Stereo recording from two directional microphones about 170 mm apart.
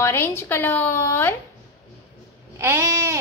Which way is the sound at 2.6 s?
15° right (ahead or behind).